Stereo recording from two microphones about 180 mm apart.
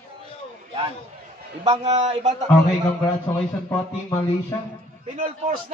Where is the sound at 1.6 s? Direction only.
35° right (ahead or behind).